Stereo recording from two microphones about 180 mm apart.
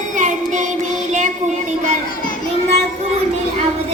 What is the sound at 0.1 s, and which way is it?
Music, 40° right (ahead or behind).